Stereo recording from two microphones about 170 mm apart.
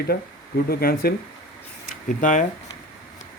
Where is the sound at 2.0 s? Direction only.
50° left (ahead or behind).